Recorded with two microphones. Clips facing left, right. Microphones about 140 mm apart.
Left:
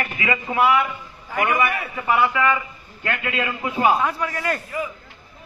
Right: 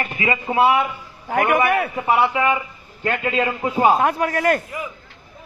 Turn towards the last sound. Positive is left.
turn(degrees=-55)  # may be behind; listen again after turning